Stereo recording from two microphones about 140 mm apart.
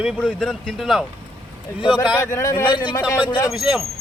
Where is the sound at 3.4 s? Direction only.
5° right (ahead or behind).